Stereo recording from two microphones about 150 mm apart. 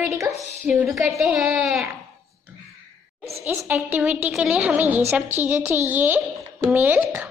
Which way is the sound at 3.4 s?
10° right (ahead or behind).